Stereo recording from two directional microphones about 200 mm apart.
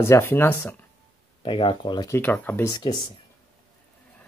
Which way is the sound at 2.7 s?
20° left (ahead or behind).